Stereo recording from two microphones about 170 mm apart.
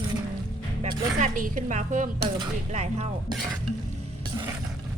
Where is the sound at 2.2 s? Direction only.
25° right (ahead or behind).